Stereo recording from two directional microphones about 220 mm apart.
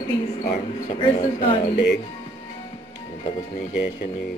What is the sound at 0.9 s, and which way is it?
Speech, 25° left (ahead or behind).